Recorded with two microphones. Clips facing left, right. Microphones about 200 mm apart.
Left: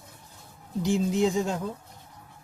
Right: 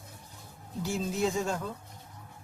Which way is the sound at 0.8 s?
15° left (ahead or behind).